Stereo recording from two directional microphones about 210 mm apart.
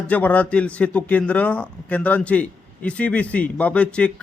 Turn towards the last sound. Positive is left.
turn(degrees=5)  # may be behind; listen again after turning